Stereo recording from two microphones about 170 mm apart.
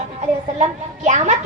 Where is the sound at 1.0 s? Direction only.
45° right (ahead or behind).